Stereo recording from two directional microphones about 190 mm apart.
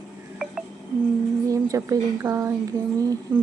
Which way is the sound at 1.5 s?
15° right (ahead or behind).